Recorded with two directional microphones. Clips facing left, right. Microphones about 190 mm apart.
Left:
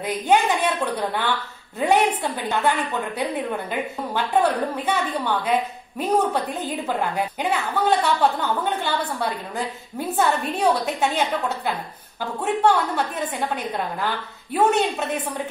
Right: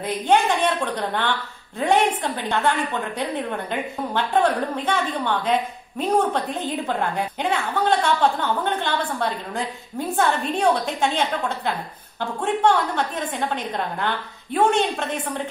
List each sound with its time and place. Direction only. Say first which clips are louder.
0.0 s a woman's voice: even; 5° left (ahead or behind)